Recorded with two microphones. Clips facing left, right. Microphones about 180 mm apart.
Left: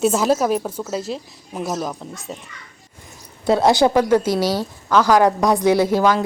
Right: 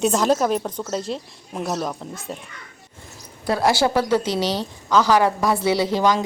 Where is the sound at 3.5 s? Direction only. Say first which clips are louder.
Left 4 dB; 20° left (ahead or behind).